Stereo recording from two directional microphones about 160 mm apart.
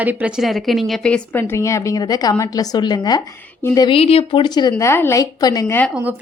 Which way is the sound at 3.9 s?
35° left (ahead or behind).